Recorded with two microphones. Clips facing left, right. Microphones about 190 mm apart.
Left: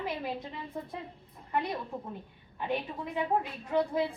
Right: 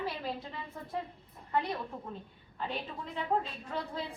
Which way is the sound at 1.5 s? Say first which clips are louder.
Left 1 dB; 15° left (ahead or behind).